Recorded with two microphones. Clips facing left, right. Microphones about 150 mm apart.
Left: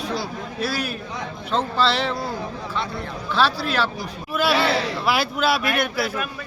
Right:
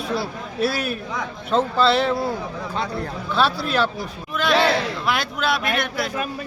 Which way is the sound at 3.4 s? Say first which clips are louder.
Right 1 dB; centre (ahead or behind).